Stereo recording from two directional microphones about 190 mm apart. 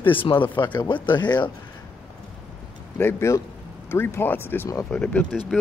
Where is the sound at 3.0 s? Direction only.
10° left (ahead or behind).